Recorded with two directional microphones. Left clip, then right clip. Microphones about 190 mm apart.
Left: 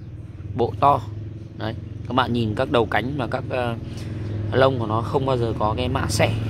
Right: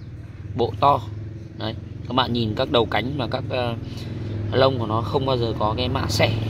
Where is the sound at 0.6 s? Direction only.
5° left (ahead or behind).